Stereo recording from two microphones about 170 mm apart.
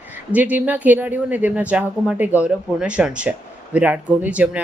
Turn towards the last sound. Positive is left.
turn(degrees=-10)  # may be behind; listen again after turning